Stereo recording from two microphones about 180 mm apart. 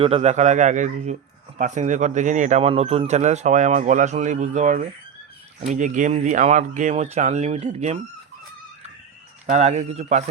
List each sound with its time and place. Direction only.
0.0 s speech: 35° right (ahead or behind)
9.5 s speech: 40° right (ahead or behind)